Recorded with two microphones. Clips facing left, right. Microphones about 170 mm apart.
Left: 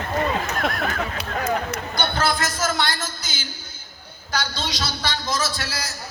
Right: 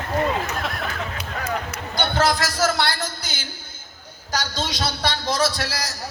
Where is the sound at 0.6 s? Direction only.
50° left (ahead or behind).